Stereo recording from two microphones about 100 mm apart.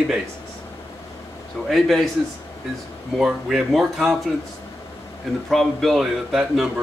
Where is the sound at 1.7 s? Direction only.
Centre (ahead or behind).